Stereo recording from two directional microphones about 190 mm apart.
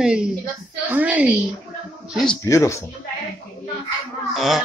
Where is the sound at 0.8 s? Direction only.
10° right (ahead or behind).